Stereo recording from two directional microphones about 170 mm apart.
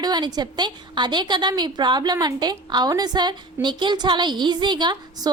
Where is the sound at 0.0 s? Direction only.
25° right (ahead or behind).